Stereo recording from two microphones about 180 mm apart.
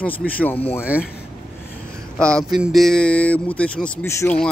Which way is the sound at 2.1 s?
5° left (ahead or behind).